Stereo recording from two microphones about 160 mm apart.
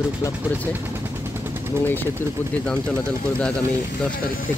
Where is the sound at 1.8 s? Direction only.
15° left (ahead or behind).